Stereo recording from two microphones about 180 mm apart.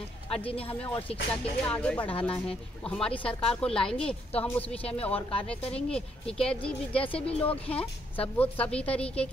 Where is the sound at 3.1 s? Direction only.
30° left (ahead or behind).